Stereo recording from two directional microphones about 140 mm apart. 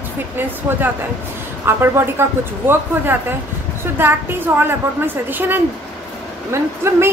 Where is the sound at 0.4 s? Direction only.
15° right (ahead or behind).